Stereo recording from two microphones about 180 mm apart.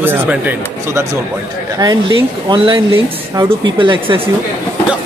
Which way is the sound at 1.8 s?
25° right (ahead or behind).